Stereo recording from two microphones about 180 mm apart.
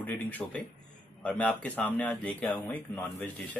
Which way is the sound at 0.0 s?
10° left (ahead or behind).